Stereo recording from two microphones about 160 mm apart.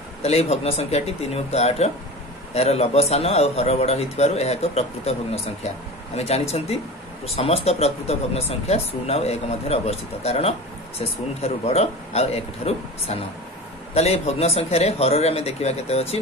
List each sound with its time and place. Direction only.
0.2 s speech: 40° left (ahead or behind)